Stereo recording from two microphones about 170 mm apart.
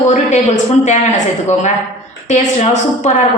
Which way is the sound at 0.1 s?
45° left (ahead or behind).